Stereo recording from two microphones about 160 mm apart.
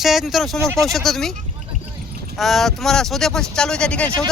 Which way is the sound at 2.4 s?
Centre (ahead or behind).